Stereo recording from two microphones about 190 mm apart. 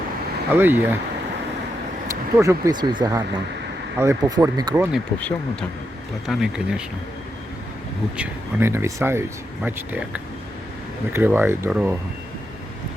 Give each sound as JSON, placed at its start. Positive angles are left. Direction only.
{"t": 0.5, "sound": "speech", "side_deg": -10}
{"t": 2.4, "sound": "speech", "side_deg": -15}
{"t": 6.2, "sound": "speech", "side_deg": 0}
{"t": 8.1, "sound": "speech", "side_deg": -10}